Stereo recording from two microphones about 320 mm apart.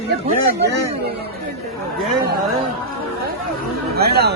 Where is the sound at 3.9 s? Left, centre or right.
Right.